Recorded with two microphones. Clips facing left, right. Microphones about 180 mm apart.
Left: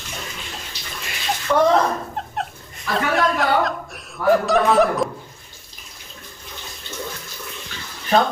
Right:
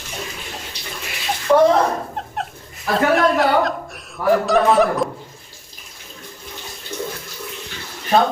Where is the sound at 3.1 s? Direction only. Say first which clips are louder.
Right 1 dB; centre (ahead or behind).